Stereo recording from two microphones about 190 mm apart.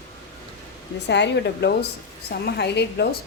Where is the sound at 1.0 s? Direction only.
65° left (ahead or behind).